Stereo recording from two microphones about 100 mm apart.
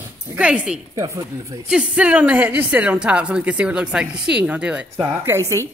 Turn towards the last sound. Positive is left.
turn(degrees=-20)  # may be behind; listen again after turning